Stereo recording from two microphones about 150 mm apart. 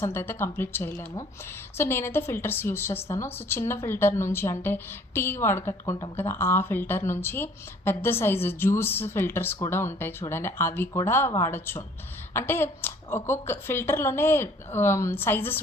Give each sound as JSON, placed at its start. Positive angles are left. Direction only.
{"t": 0.0, "sound": "a woman's voice", "side_deg": 15}